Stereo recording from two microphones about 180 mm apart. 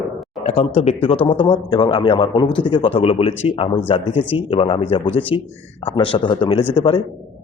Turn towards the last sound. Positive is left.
turn(degrees=30)  # may be behind; listen again after turning